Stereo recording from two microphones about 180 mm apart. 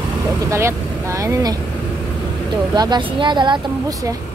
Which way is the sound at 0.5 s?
15° right (ahead or behind).